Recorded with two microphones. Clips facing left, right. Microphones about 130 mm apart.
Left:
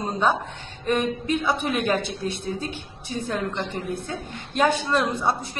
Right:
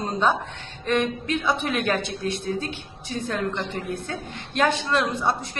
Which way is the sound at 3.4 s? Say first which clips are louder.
Even; 15° left (ahead or behind).